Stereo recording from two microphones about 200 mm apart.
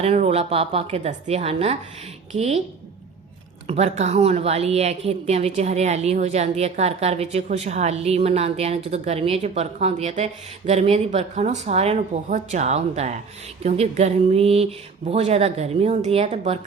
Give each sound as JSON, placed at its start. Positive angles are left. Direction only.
{"t": 0.0, "sound": "a woman's voice", "side_deg": -30}
{"t": 3.7, "sound": "a woman's voice", "side_deg": -35}